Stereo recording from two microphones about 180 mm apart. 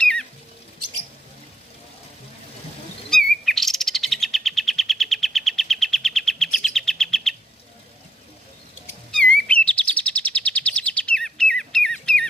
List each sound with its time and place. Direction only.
0.0 s a sound: 5° left (ahead or behind)
3.4 s bird: centre (ahead or behind)
9.1 s chirp: 5° left (ahead or behind)